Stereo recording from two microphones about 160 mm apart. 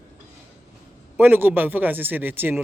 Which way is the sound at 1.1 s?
10° right (ahead or behind).